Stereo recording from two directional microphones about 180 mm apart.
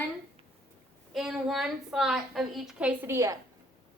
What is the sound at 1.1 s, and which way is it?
A woman's voice, centre (ahead or behind).